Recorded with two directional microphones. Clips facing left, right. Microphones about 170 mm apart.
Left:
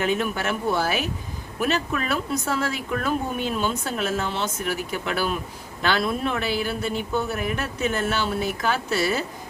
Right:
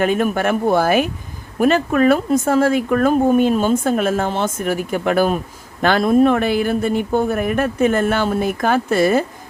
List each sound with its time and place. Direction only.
0.0 s speech: 50° right (ahead or behind)